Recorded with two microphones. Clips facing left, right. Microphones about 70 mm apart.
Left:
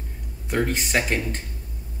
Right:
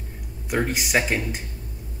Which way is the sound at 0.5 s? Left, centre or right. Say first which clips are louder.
Even; centre.